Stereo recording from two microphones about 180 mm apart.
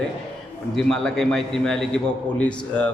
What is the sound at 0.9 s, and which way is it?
A man's voice, 5° left (ahead or behind).